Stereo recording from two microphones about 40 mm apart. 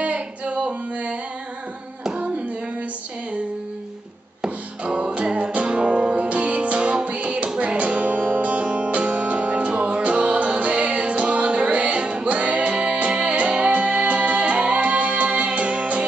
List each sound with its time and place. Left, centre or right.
0.0 s singing: right
4.4 s music: right